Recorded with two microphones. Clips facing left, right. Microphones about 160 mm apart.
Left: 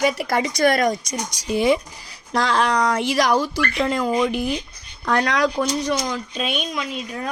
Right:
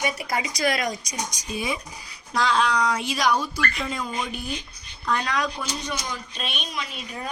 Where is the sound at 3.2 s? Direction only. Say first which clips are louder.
Left 4 dB; 90° left.